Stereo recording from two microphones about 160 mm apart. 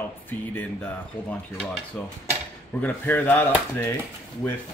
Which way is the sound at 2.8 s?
10° left (ahead or behind).